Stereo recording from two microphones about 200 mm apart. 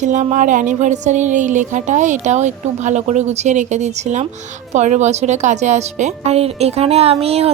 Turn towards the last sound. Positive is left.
turn(degrees=-30)  # may be behind; listen again after turning